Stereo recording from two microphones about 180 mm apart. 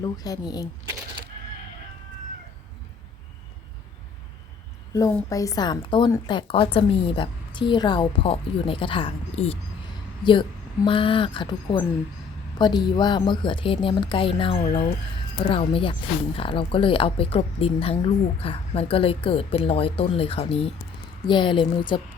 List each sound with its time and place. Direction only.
0.0 s a woman's voice: 20° left (ahead or behind)
4.9 s a woman's voice: 20° left (ahead or behind)